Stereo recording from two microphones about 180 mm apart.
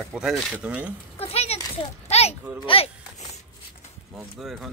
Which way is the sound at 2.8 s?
35° left (ahead or behind).